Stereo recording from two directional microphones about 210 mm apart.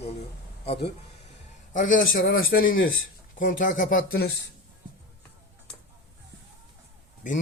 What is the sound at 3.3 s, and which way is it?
Speech, 40° left (ahead or behind).